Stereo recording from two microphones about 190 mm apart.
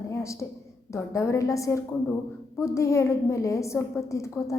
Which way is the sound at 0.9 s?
15° left (ahead or behind).